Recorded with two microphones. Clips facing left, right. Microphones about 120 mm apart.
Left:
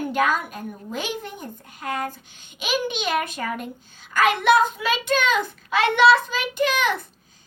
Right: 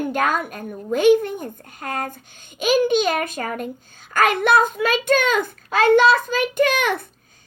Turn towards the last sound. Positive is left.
turn(degrees=-55)  # may be behind; listen again after turning